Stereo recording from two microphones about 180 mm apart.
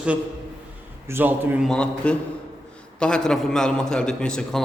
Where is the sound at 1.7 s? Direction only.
5° left (ahead or behind).